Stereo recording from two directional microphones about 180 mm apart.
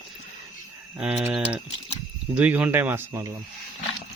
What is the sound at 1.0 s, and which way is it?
Speech, 5° right (ahead or behind).